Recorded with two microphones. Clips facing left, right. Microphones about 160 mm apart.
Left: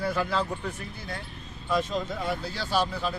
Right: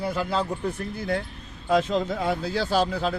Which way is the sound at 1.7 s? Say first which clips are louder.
Right 5 dB; 85° right.